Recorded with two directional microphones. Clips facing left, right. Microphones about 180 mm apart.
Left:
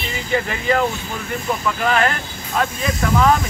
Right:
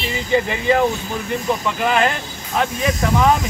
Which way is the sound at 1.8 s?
20° right (ahead or behind).